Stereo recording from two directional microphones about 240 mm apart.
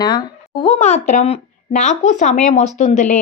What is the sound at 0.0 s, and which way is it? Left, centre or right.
Speech, centre.